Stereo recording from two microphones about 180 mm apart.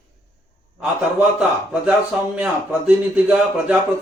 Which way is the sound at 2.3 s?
5° right (ahead or behind).